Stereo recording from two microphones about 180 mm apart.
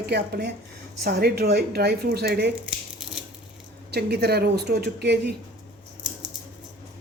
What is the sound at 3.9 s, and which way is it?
A woman's voice, 65° right (ahead or behind).